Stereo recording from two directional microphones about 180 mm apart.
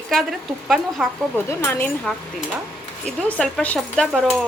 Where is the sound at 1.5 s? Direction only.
15° left (ahead or behind).